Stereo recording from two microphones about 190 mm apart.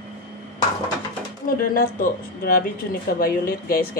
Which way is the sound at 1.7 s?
50° left (ahead or behind).